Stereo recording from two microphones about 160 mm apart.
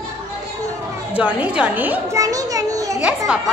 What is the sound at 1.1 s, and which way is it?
A woman's voice, 10° right (ahead or behind).